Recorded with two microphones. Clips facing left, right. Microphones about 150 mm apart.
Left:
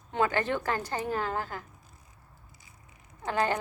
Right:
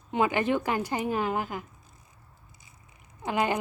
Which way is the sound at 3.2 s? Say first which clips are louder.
Right 1 dB; 15° right (ahead or behind).